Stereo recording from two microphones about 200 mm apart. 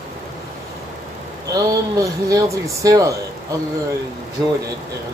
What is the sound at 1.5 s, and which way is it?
Speech, 15° right (ahead or behind).